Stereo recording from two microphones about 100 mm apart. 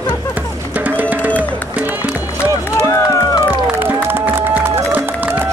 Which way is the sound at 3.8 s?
20° right (ahead or behind).